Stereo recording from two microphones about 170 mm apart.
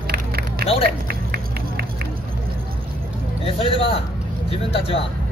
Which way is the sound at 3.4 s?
35° left (ahead or behind).